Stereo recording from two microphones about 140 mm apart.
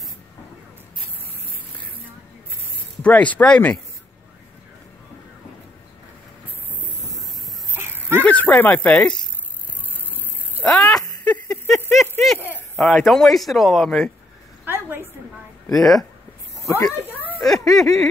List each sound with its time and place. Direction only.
3.0 s speech: 10° left (ahead or behind)
7.7 s a sound: 15° right (ahead or behind)
8.2 s speech: 10° left (ahead or behind)
10.6 s a sound: 5° left (ahead or behind)
12.5 s speech: 5° left (ahead or behind)
14.6 s a sound: 15° right (ahead or behind)
15.7 s speech: centre (ahead or behind)
16.6 s speech: 20° left (ahead or behind)
17.5 s speech: centre (ahead or behind)